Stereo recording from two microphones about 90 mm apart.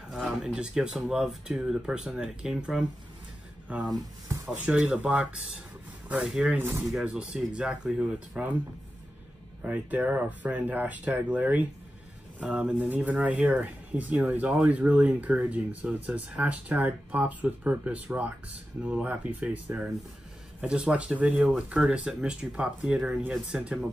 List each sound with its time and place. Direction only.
0.4 s speech: 10° right (ahead or behind)
6.5 s speech: 25° right (ahead or behind)
6.9 s speech: 10° right (ahead or behind)
9.6 s speech: 20° right (ahead or behind)